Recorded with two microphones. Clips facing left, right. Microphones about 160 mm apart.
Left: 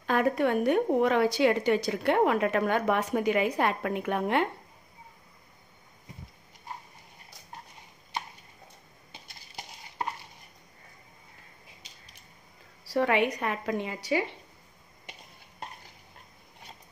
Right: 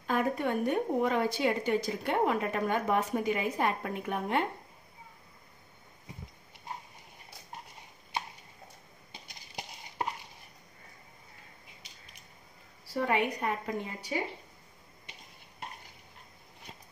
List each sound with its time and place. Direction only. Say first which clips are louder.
0.0 s a woman's voice: left 4 dB; 85° left
12.8 s a woman's voice: left 4 dB; 80° left